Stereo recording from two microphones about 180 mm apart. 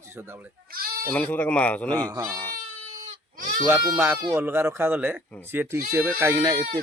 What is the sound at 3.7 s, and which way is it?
Speech, 10° right (ahead or behind).